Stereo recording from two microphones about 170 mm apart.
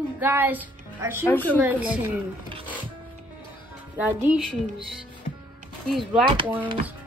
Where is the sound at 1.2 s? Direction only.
10° left (ahead or behind).